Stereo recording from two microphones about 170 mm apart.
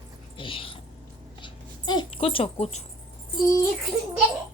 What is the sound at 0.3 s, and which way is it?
Speech, 30° left (ahead or behind).